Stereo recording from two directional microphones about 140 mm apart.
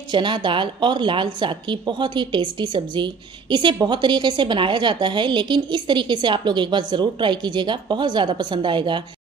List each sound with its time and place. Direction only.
0.1 s a woman's voice: 35° right (ahead or behind)